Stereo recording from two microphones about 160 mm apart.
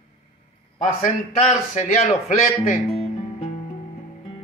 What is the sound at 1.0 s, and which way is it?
Speech, 45° left (ahead or behind).